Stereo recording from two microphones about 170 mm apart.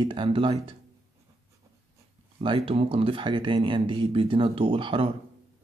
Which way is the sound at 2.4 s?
30° right (ahead or behind).